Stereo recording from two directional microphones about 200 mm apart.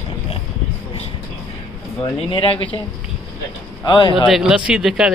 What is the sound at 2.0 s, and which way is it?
Speech, 25° left (ahead or behind).